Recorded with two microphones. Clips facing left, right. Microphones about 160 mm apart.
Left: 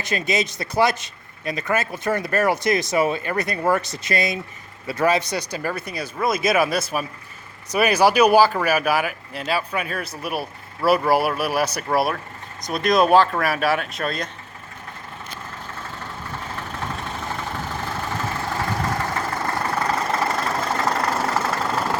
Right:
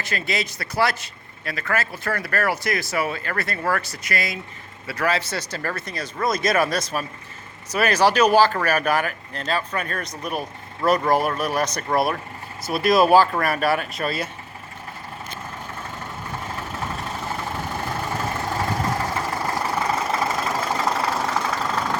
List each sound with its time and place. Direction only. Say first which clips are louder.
0.0 s a man's voice: left 4 dB; 20° left (ahead or behind); by 14.3 s 5° right (ahead or behind)
19.0 s vehicle: even; 10° right (ahead or behind)